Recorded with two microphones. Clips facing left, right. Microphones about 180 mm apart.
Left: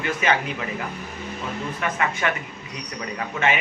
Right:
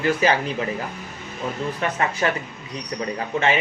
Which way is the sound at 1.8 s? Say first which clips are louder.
Right 1 dB; 35° right (ahead or behind).